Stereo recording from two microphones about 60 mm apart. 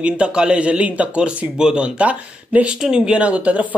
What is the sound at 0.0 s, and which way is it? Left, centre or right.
Speech, centre.